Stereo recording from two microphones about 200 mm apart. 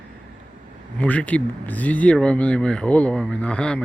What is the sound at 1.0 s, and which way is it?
Speech, 5° left (ahead or behind).